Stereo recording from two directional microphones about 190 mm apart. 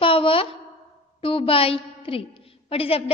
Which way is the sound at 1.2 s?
30° left (ahead or behind).